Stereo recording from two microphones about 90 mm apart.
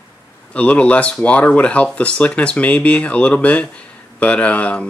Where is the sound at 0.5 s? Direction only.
15° left (ahead or behind).